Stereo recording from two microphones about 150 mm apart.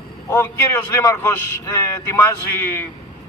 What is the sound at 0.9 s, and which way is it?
A man's voice, 15° left (ahead or behind).